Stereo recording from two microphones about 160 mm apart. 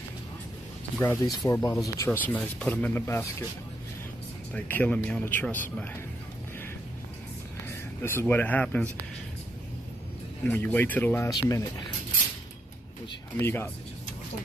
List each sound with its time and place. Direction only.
1.0 s speech: 20° left (ahead or behind)
2.0 s speech: 10° left (ahead or behind)
4.6 s speech: 10° left (ahead or behind)
8.0 s speech: 15° left (ahead or behind)
10.4 s speech: 10° left (ahead or behind)
13.4 s speech: 15° left (ahead or behind)